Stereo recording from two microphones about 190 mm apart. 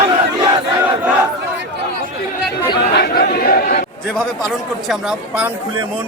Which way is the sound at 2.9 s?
60° left (ahead or behind).